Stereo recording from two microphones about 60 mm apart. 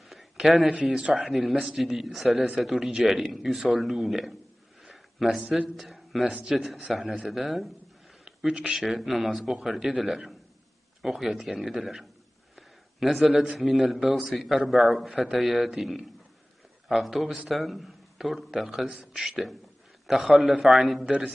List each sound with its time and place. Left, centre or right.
0.4 s a man's voice: centre
1.3 s a man's voice: centre
8.3 s a sound: centre
8.7 s a man's voice: centre
12.5 s a sound: centre
13.6 s a man's voice: centre
21.0 s a man's voice: centre